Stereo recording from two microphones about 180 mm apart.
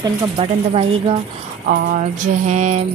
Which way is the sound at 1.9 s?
40° right (ahead or behind).